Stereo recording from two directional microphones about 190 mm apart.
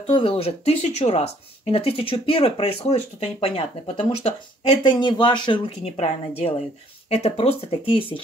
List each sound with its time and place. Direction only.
0.0 s speech: 30° left (ahead or behind)